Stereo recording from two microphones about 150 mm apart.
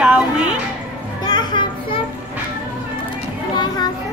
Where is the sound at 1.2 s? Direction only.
30° left (ahead or behind).